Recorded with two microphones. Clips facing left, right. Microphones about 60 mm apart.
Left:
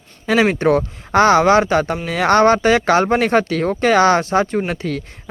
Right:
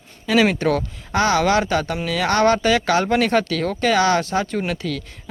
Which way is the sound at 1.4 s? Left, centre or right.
Left.